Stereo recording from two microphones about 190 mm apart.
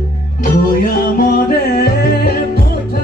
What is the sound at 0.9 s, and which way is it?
Music, 50° left (ahead or behind).